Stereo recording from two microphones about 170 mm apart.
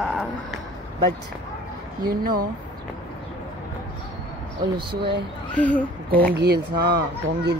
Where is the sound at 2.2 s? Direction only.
55° right (ahead or behind).